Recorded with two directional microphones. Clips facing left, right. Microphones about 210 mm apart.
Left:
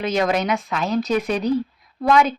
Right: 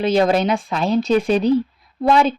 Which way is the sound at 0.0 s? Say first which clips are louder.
Right 5 dB; 30° right (ahead or behind).